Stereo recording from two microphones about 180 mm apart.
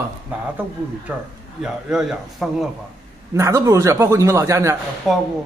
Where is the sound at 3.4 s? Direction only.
20° right (ahead or behind).